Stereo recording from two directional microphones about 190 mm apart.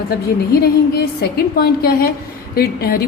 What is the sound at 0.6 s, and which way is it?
A woman's voice, 55° left (ahead or behind).